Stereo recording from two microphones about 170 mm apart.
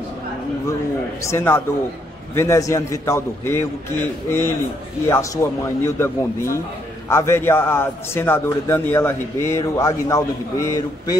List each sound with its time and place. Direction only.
1.2 s a man's voice: 15° left (ahead or behind)